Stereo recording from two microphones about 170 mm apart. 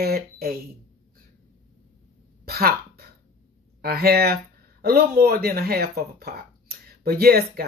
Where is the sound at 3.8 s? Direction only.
65° right (ahead or behind).